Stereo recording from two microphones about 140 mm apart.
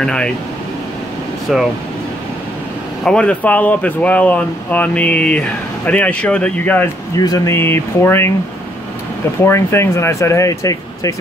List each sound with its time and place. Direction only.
0.0 s speech: 5° left (ahead or behind)
1.5 s speech: centre (ahead or behind)
3.0 s speech: 5° left (ahead or behind)
7.2 s speech: 25° left (ahead or behind)
9.4 s speech: 20° left (ahead or behind)